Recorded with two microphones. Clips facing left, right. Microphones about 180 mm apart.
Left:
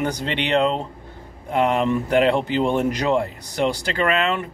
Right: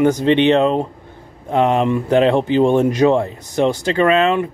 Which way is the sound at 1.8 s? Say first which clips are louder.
Right 4 dB; 20° right (ahead or behind).